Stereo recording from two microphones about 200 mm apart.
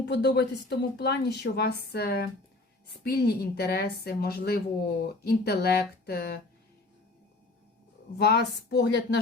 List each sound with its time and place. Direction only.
0.1 s a woman's voice: 55° left (ahead or behind)
8.2 s a woman's voice: 55° left (ahead or behind)